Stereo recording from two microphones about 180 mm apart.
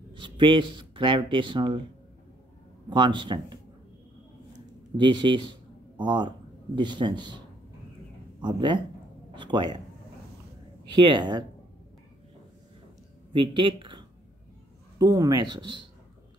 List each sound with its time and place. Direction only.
0.1 s speech: 25° right (ahead or behind)
2.9 s speech: 25° right (ahead or behind)
4.9 s speech: 25° right (ahead or behind)
11.0 s speech: 25° right (ahead or behind)
13.3 s speech: 25° right (ahead or behind)